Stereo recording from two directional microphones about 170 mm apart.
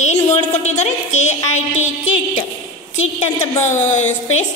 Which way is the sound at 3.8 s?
45° left (ahead or behind).